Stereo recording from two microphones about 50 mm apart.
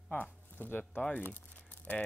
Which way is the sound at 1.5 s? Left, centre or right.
Left.